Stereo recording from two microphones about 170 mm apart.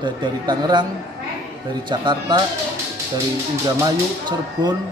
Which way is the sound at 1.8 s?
25° right (ahead or behind).